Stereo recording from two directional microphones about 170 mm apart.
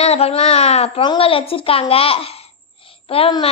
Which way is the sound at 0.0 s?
35° left (ahead or behind).